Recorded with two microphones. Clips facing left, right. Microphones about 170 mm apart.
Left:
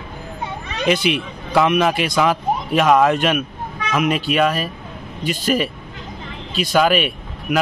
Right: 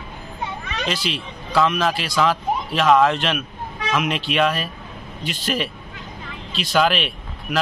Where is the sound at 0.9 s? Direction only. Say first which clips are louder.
Left 8 dB; 60° left (ahead or behind).